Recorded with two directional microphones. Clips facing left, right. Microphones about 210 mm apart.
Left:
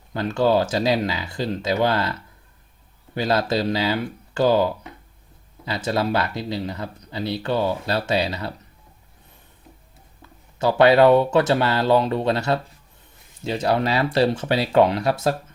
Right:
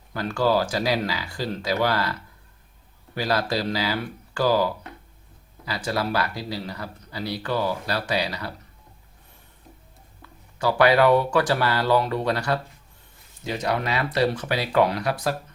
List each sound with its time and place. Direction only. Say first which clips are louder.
0.1 s speech: left 3 dB; 25° left (ahead or behind)
3.2 s speech: left 3 dB; 25° left (ahead or behind)
10.6 s speech: left 4 dB; 25° left (ahead or behind)